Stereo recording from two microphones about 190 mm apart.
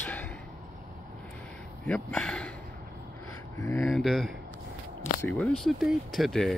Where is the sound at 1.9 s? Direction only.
5° left (ahead or behind).